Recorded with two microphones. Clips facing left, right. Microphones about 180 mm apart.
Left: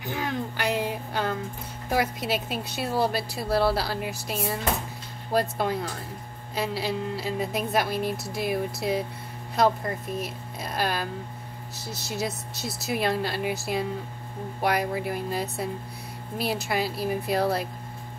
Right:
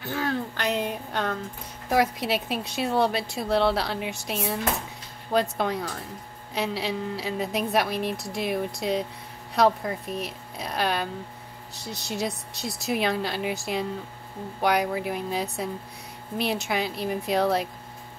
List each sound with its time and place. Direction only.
0.0 s speech: 15° left (ahead or behind)